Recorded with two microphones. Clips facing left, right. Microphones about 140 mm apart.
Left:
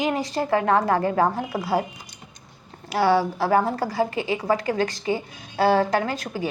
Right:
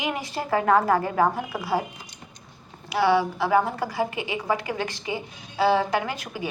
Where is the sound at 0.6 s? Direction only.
25° left (ahead or behind).